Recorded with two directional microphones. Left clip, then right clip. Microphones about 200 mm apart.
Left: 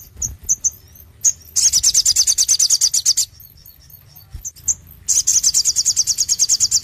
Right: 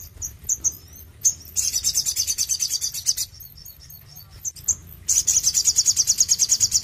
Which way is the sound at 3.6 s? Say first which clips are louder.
Right 3 dB; 5° right (ahead or behind).